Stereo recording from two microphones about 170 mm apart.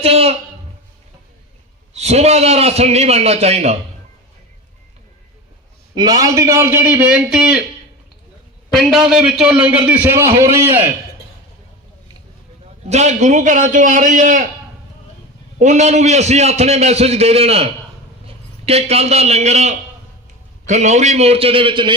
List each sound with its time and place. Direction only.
0.0 s a man's voice: 35° right (ahead or behind)
1.9 s a man's voice: 40° right (ahead or behind)
5.9 s a man's voice: 25° right (ahead or behind); by 7.6 s 5° right (ahead or behind)
8.7 s a man's voice: centre (ahead or behind)
12.9 s a man's voice: 40° right (ahead or behind)
15.5 s a man's voice: 45° right (ahead or behind); by 21.9 s 30° right (ahead or behind)